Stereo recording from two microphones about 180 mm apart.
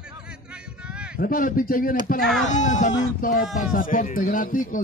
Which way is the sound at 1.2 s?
50° left (ahead or behind).